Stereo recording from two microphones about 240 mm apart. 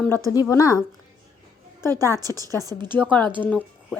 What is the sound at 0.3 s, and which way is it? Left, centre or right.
Speech, centre.